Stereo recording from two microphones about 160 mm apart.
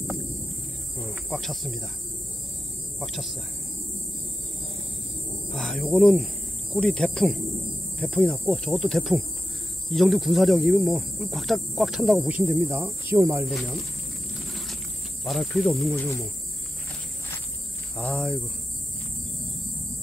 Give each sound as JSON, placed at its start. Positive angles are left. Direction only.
{"t": 1.3, "sound": "speech", "side_deg": 0}
{"t": 3.0, "sound": "speech", "side_deg": 0}
{"t": 5.5, "sound": "speech", "side_deg": 0}
{"t": 13.5, "sound": "speech", "side_deg": 0}
{"t": 14.3, "sound": "vehicle", "side_deg": 0}
{"t": 15.2, "sound": "speech", "side_deg": 0}
{"t": 16.0, "sound": "speech", "side_deg": 15}
{"t": 17.9, "sound": "speech", "side_deg": 5}